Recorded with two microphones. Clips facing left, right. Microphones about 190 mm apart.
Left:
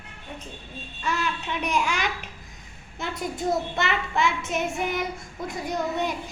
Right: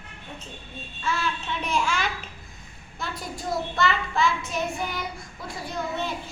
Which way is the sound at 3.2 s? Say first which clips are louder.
Left 4 dB; 20° left (ahead or behind).